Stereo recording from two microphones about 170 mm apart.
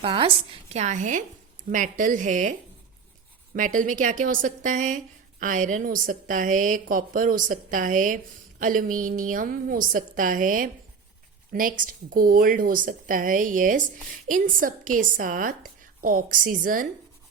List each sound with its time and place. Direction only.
0.0 s speech: 30° right (ahead or behind); by 16.9 s 55° right (ahead or behind)